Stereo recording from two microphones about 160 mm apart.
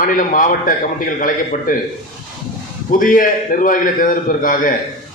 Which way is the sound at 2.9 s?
60° left (ahead or behind).